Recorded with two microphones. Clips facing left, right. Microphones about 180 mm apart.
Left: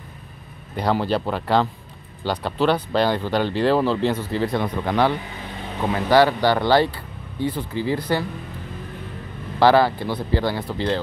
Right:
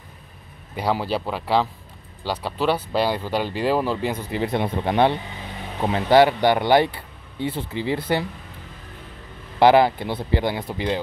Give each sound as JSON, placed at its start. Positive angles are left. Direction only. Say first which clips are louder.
{"t": 0.7, "sound": "speech", "louder": "left 2 dB", "side_deg": -5}
{"t": 9.6, "sound": "speech", "louder": "right 1 dB", "side_deg": -20}